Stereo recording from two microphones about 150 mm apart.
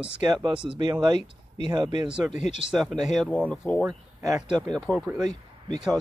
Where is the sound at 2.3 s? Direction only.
50° left (ahead or behind).